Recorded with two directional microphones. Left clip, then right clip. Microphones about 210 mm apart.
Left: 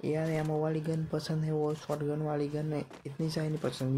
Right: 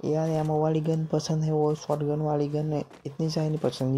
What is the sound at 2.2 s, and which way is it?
Speech, 20° right (ahead or behind).